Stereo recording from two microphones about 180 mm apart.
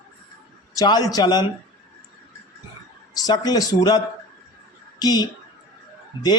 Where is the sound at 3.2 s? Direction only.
20° left (ahead or behind).